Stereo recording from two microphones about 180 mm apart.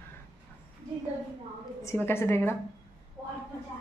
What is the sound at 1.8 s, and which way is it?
Speech, 15° left (ahead or behind).